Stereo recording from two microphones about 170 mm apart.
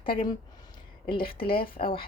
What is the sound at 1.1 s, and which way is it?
Speech, 60° left (ahead or behind).